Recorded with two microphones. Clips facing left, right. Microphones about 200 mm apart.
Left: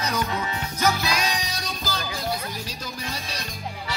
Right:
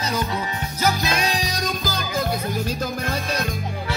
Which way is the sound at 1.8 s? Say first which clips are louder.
Right 5 dB; 50° right (ahead or behind).